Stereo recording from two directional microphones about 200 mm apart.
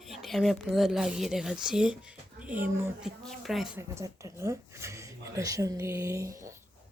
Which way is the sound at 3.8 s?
15° right (ahead or behind).